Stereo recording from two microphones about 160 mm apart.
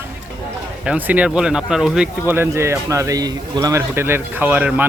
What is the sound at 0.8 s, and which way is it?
Speech, 10° right (ahead or behind).